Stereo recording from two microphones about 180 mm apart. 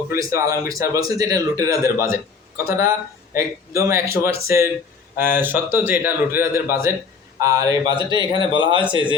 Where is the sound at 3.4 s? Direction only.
15° right (ahead or behind).